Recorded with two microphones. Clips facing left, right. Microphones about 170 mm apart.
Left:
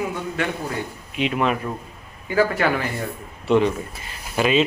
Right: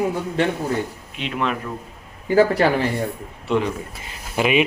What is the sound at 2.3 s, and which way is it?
Speech, 35° right (ahead or behind).